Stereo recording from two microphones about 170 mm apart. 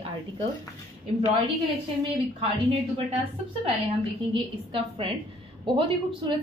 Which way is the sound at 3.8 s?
35° right (ahead or behind).